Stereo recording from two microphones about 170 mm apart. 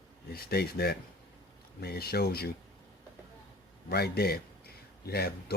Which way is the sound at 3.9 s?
65° left (ahead or behind).